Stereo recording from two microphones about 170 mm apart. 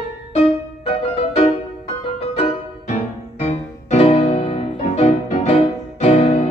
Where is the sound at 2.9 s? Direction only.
40° left (ahead or behind).